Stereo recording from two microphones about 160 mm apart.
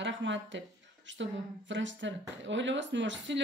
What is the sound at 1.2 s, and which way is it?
Speech, 90° right.